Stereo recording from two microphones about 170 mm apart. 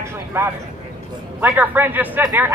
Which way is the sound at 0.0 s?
15° right (ahead or behind).